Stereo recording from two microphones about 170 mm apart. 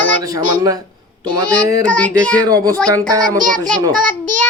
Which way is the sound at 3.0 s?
50° right (ahead or behind).